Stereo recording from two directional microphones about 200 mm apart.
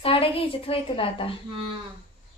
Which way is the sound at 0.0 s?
25° left (ahead or behind).